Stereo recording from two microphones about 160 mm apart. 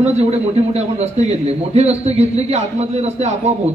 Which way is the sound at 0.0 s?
40° right (ahead or behind).